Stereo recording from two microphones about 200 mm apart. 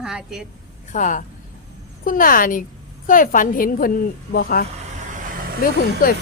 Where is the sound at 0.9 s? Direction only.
40° left (ahead or behind).